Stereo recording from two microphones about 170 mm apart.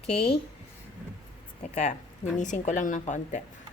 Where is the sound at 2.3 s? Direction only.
45° left (ahead or behind).